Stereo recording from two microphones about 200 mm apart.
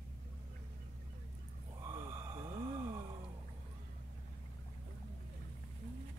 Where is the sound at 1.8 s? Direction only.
20° right (ahead or behind).